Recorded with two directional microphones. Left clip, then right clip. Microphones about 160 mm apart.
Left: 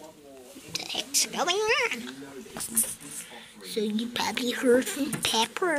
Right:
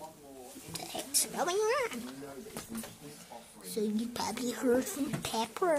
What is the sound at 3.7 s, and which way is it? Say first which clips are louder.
Speech: left 5 dB; 10° right (ahead or behind).